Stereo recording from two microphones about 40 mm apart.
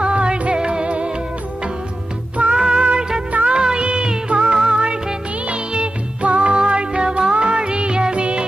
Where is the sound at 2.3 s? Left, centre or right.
Right.